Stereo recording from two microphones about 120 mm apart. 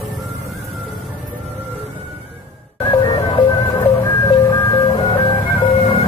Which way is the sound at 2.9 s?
40° left (ahead or behind).